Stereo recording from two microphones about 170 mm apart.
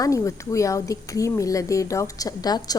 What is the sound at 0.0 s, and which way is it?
A woman's voice, 20° left (ahead or behind).